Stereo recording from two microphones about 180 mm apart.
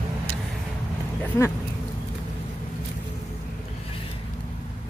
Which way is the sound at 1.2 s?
15° left (ahead or behind).